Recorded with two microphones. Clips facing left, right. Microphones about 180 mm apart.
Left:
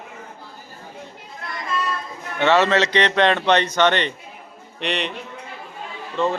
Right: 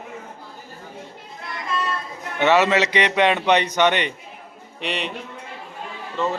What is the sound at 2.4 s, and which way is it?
Speech, 15° right (ahead or behind).